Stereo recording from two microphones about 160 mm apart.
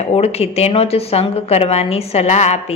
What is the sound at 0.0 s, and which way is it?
A woman's voice, 40° left (ahead or behind).